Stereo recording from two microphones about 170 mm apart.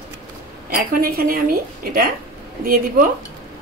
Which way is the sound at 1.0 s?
60° right (ahead or behind).